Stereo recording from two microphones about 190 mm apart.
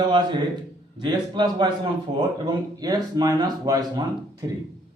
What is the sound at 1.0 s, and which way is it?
A man's voice, 25° right (ahead or behind).